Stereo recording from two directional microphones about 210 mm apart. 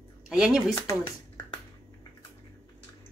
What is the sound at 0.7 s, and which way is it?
Speech, 15° left (ahead or behind).